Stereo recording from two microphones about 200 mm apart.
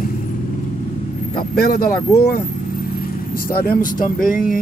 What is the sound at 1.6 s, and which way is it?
Speech, 50° left (ahead or behind).